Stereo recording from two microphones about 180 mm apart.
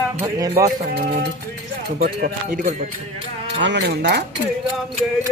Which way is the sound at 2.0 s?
55° right (ahead or behind).